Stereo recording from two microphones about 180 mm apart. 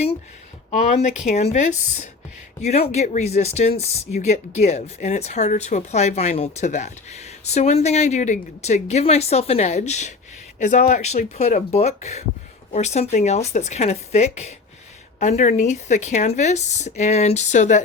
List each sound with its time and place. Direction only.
1.4 s speech: 40° left (ahead or behind)